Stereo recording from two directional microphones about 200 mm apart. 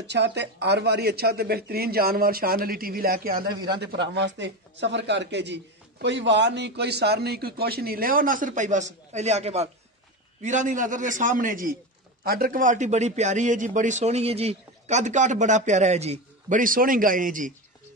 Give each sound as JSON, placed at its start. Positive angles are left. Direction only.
{"t": 0.0, "sound": "a man's voice", "side_deg": -60}